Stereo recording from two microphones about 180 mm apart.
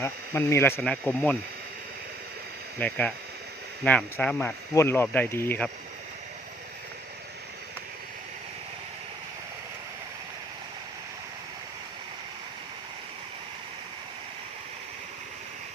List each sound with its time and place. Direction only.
0.0 s speech: 15° left (ahead or behind)
2.7 s speech: 10° left (ahead or behind)